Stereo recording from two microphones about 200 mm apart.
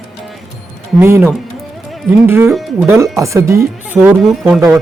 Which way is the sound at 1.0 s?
10° right (ahead or behind).